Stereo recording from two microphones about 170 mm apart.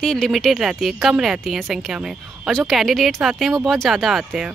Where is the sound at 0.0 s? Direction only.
5° left (ahead or behind).